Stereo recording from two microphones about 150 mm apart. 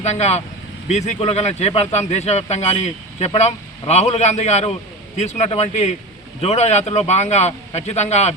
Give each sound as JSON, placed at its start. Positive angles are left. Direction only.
{"t": 0.0, "sound": "speech", "side_deg": 50}